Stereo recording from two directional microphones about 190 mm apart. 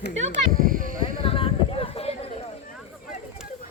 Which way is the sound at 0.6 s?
45° right (ahead or behind).